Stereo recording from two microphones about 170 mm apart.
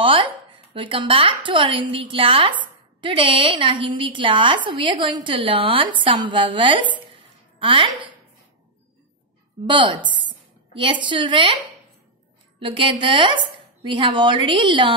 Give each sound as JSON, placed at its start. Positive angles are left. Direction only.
{"t": 0.0, "sound": "a woman's voice", "side_deg": -30}
{"t": 9.7, "sound": "a woman's voice", "side_deg": -30}
{"t": 12.5, "sound": "a woman's voice", "side_deg": -30}